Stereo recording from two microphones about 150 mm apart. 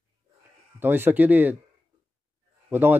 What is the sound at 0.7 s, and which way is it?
Speech, 15° right (ahead or behind).